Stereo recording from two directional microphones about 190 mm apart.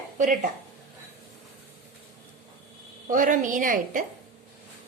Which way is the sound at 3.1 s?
45° right (ahead or behind).